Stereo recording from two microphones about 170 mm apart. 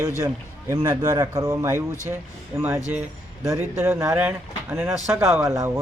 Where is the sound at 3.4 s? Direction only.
15° right (ahead or behind).